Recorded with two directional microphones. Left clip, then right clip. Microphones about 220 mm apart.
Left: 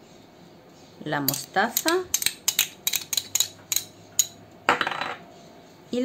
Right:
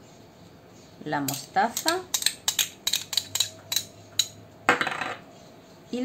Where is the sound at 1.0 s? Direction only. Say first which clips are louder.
Left 2 dB; 30° left (ahead or behind).